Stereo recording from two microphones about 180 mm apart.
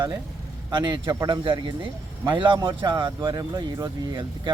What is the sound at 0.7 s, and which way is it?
Speech, 25° right (ahead or behind).